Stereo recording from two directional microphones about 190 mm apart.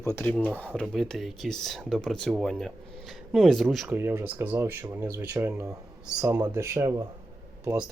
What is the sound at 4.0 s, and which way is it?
Speech, 10° right (ahead or behind).